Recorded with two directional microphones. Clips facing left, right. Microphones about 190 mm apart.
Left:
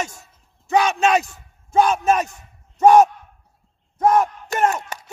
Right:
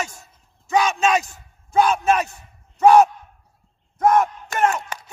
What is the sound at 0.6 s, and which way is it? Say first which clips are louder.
Speech: left 1 dB; 55° left (ahead or behind).